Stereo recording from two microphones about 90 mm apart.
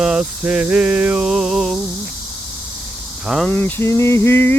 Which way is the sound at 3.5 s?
25° left (ahead or behind).